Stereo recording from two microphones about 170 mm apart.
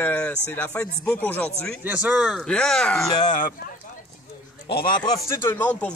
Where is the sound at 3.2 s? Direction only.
50° left (ahead or behind).